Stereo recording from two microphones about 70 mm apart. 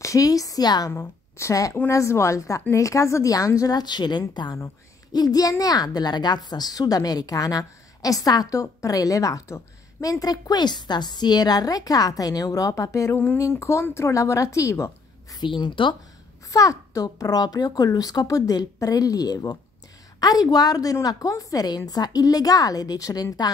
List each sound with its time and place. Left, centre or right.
0.0 s a woman's voice: left
0.9 s a woman's voice: left
3.7 s a woman's voice: left
5.1 s a woman's voice: left
15.3 s a woman's voice: left
16.4 s a woman's voice: left